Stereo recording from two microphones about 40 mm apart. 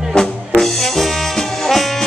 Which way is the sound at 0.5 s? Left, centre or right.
Centre.